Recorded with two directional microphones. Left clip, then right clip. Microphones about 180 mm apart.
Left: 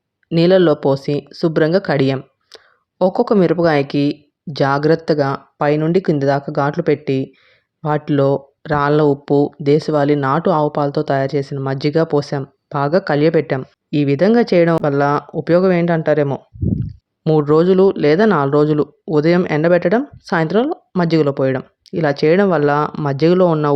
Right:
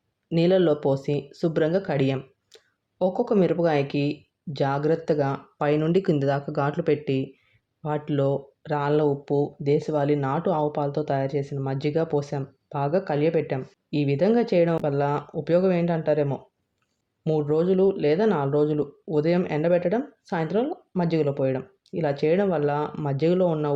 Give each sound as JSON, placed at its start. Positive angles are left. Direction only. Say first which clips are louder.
{"t": 0.3, "sound": "speech", "louder": "left 8 dB", "side_deg": 35}